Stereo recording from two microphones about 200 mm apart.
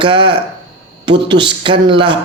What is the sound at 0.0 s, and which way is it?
A man's voice, 25° right (ahead or behind).